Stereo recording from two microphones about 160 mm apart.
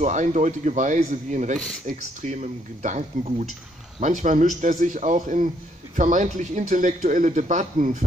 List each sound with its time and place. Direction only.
0.0 s speech: 50° right (ahead or behind)